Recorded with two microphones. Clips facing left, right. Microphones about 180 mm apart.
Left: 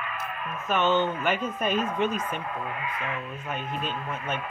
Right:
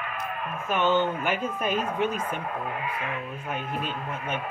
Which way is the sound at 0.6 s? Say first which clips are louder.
Even; 10° right (ahead or behind).